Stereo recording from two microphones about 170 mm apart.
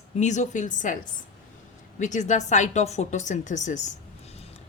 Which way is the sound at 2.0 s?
45° left (ahead or behind).